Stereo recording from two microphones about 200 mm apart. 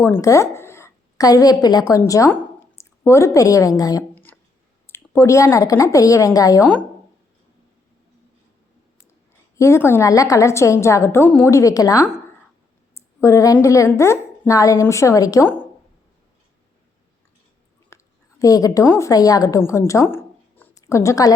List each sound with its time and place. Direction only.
0.0 s a woman's voice: 15° left (ahead or behind)
4.1 s a sound: 10° left (ahead or behind)
4.9 s a woman's voice: 15° left (ahead or behind)
9.6 s a woman's voice: 15° left (ahead or behind)
17.8 s a woman's voice: 15° left (ahead or behind)